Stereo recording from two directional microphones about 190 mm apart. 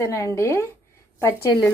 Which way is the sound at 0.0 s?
15° left (ahead or behind).